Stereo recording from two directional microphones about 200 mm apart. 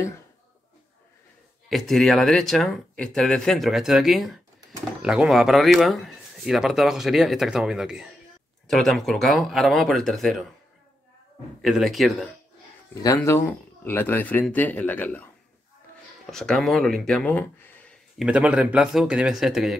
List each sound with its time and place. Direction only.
1.7 s speech: centre (ahead or behind)
11.6 s speech: centre (ahead or behind)
13.0 s speech: 15° left (ahead or behind)
16.3 s speech: 5° left (ahead or behind)
18.2 s speech: 5° right (ahead or behind)